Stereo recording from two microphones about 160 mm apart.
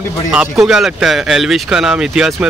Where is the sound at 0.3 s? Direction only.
5° right (ahead or behind).